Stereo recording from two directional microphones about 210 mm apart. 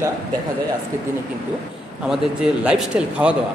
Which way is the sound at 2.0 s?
5° right (ahead or behind).